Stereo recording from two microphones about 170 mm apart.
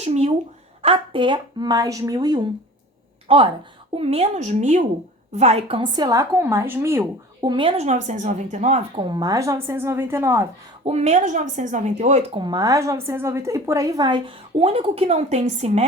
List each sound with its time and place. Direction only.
0.0 s a woman's voice: 40° right (ahead or behind); by 7.0 s 15° right (ahead or behind)
7.4 s speech: 30° right (ahead or behind)
9.0 s a woman's voice: 25° right (ahead or behind)
10.8 s speech: 40° right (ahead or behind)
12.4 s a woman's voice: 25° right (ahead or behind)